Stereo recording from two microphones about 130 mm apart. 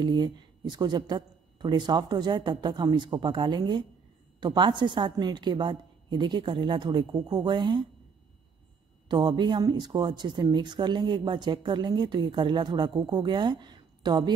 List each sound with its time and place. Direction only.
0.0 s speech: 35° right (ahead or behind)
9.1 s speech: 35° right (ahead or behind)